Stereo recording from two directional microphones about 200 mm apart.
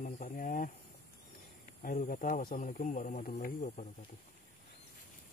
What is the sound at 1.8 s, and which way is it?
Speech, 45° left (ahead or behind).